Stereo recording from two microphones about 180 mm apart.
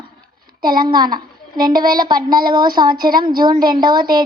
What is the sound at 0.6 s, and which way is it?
Speech, 55° right (ahead or behind).